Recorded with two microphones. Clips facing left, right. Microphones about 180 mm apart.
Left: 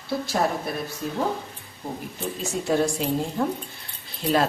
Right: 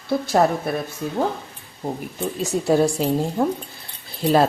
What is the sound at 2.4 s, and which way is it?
Speech, 35° right (ahead or behind).